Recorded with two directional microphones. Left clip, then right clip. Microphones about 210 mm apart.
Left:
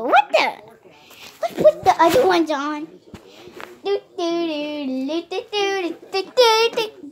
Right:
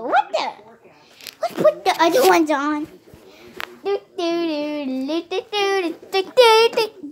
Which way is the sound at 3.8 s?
30° right (ahead or behind).